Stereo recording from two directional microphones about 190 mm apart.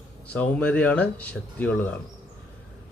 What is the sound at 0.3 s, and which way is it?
Speech, 5° left (ahead or behind).